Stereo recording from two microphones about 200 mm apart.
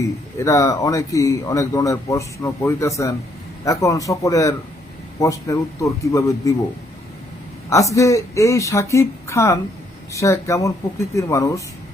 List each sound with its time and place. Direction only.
0.3 s a man's voice: 15° left (ahead or behind)
7.7 s a man's voice: 15° left (ahead or behind)